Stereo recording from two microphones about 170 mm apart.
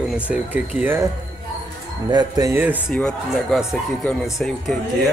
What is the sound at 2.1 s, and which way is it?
Speech, 20° right (ahead or behind).